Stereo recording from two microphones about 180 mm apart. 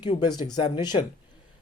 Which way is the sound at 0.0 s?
25° left (ahead or behind).